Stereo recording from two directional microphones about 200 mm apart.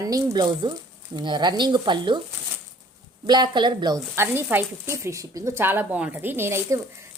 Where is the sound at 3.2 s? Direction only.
20° right (ahead or behind).